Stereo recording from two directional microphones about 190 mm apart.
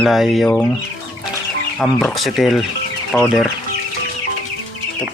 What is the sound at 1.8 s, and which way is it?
Speech, centre (ahead or behind).